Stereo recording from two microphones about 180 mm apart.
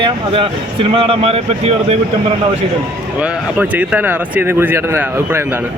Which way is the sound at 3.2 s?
10° right (ahead or behind).